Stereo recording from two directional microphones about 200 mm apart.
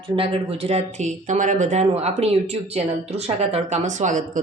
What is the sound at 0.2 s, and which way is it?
Speech, 30° right (ahead or behind).